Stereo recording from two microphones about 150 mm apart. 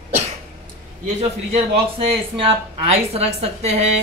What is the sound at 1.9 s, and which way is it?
A man's voice, 35° right (ahead or behind).